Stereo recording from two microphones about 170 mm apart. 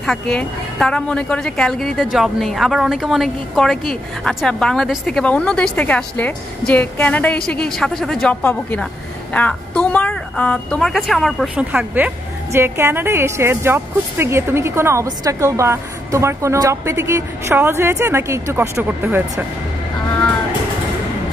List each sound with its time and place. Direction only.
0.0 s a woman's voice: 5° left (ahead or behind); by 19.4 s 15° right (ahead or behind)